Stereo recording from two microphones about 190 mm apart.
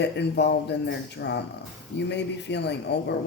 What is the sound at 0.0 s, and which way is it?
Speech, 65° left (ahead or behind).